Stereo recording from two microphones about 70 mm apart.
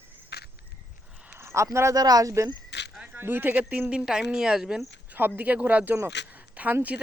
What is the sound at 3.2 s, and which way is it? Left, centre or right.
Speech, right.